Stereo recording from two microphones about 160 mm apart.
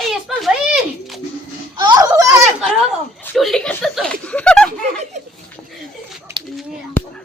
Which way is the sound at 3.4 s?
Centre (ahead or behind).